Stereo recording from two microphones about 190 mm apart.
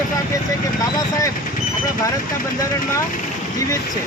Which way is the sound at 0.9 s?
20° left (ahead or behind).